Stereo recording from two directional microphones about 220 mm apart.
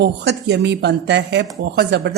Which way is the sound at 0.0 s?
50° right (ahead or behind).